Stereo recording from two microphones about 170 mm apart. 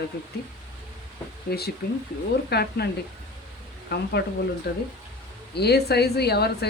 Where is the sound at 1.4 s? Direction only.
70° left (ahead or behind).